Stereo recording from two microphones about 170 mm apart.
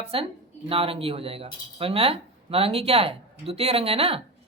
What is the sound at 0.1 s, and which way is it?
Speech, 35° right (ahead or behind).